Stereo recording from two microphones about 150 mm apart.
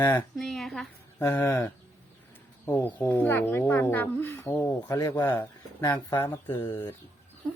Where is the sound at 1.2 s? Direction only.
15° left (ahead or behind).